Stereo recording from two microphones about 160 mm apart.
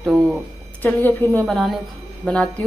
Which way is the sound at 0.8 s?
15° left (ahead or behind).